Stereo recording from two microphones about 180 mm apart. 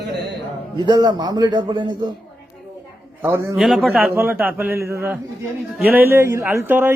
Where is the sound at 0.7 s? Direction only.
25° right (ahead or behind).